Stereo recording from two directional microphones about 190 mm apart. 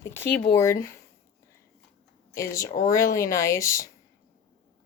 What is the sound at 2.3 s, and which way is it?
Speech, 15° left (ahead or behind).